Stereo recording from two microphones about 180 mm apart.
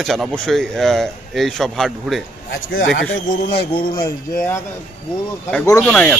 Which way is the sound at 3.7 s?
25° left (ahead or behind).